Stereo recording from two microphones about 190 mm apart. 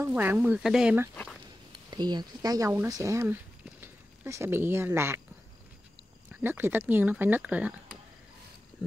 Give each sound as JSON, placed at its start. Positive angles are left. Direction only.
{"t": 0.0, "sound": "speech", "side_deg": -10}
{"t": 1.9, "sound": "speech", "side_deg": -20}
{"t": 6.4, "sound": "speech", "side_deg": -10}